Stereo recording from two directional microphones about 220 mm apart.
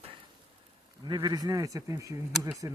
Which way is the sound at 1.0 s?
20° right (ahead or behind).